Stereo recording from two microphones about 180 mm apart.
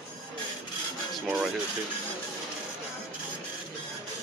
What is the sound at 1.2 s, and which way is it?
Speech, 10° right (ahead or behind).